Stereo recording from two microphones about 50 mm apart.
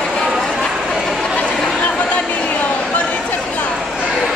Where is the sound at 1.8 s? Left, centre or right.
Left.